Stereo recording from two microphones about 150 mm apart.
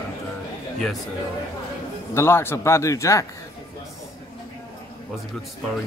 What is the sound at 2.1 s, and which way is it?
Speech, 15° left (ahead or behind).